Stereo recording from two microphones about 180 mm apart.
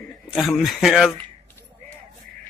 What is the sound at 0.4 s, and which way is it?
Speech, centre (ahead or behind).